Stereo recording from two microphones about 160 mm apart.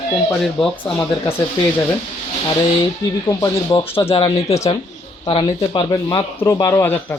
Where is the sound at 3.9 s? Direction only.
35° left (ahead or behind).